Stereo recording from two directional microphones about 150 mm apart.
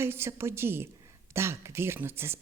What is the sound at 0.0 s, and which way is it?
A man's voice, 15° right (ahead or behind).